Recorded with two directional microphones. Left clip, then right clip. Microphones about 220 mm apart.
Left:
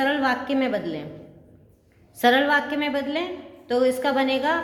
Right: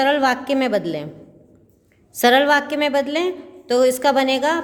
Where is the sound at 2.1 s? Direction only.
50° right (ahead or behind).